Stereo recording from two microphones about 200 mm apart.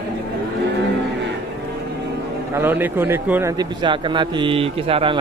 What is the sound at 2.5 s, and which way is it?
A man's voice, 10° right (ahead or behind).